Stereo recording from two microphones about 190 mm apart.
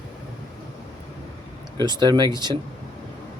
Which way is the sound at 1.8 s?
20° right (ahead or behind).